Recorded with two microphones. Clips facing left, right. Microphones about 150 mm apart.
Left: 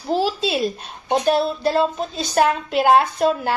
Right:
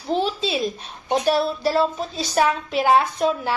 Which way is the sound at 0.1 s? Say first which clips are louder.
Left 2 dB; 5° left (ahead or behind).